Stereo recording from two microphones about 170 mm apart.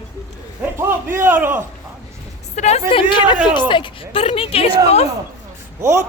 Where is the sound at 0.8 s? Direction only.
15° right (ahead or behind).